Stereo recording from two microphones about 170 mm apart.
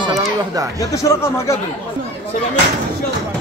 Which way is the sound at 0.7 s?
20° left (ahead or behind).